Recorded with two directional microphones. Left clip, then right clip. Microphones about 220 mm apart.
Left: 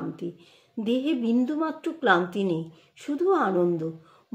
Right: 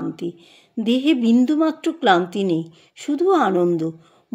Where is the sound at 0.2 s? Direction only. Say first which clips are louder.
Right 7 dB; 50° right (ahead or behind).